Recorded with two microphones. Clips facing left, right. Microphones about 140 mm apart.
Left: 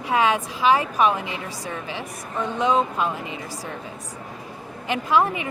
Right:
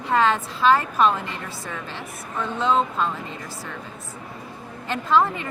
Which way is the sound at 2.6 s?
15° left (ahead or behind).